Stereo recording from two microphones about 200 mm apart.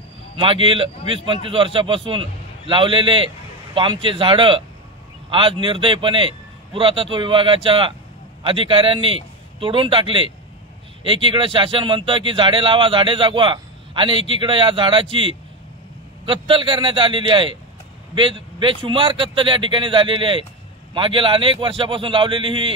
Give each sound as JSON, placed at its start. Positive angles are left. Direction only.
{"t": 0.4, "sound": "a man's voice", "side_deg": -25}